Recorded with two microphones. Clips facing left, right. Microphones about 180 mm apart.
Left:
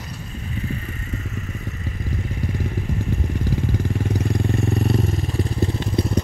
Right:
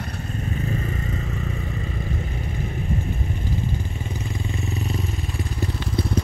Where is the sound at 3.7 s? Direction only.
80° left; by 5.9 s 35° left (ahead or behind).